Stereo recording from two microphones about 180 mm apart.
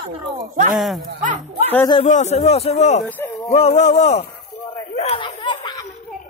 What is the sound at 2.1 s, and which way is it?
Speech, 40° left (ahead or behind).